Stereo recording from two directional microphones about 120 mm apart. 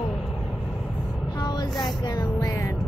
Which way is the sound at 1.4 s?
35° left (ahead or behind).